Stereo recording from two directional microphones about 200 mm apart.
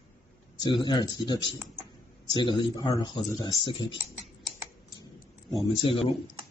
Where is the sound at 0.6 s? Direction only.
25° left (ahead or behind).